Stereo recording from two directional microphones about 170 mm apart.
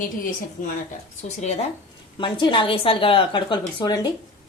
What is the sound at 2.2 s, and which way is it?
A woman's voice, 30° left (ahead or behind).